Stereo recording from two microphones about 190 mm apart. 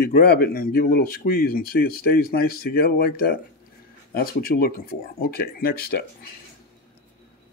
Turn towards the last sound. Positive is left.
turn(degrees=55)  # may be behind; listen again after turning